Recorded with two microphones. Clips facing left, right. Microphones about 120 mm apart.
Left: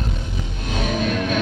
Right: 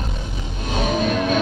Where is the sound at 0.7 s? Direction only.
20° right (ahead or behind).